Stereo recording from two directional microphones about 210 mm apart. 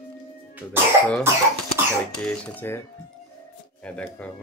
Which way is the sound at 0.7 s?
5° left (ahead or behind).